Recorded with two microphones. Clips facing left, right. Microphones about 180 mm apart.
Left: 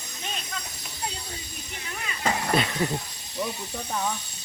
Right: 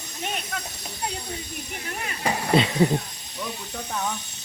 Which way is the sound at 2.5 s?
25° right (ahead or behind).